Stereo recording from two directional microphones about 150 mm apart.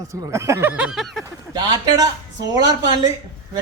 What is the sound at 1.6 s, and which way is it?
A man's voice, 30° right (ahead or behind).